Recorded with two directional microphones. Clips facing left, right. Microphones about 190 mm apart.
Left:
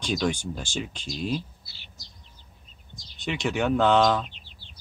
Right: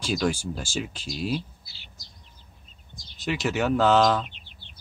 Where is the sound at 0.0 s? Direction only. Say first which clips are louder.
Right 1 dB; 5° right (ahead or behind).